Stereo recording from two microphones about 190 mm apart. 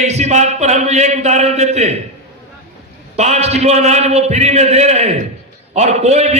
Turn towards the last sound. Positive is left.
turn(degrees=-35)  # may be behind; listen again after turning